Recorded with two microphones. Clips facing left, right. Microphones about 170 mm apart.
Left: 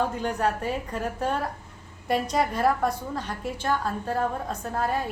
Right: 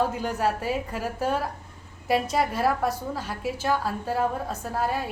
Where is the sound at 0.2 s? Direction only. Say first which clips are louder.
Even; 5° right (ahead or behind).